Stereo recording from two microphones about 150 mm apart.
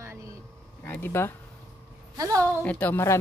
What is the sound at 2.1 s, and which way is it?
Speech, 20° right (ahead or behind).